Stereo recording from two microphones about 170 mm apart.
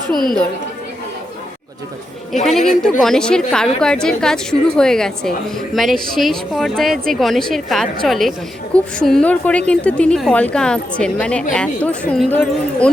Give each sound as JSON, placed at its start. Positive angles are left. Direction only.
{"t": 0.1, "sound": "a woman's voice", "side_deg": 60}
{"t": 2.3, "sound": "a woman's voice", "side_deg": 0}